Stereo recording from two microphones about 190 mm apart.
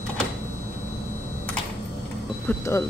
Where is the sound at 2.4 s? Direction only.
15° left (ahead or behind).